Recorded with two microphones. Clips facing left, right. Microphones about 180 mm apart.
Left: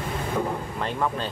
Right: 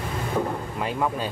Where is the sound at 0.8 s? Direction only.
10° right (ahead or behind).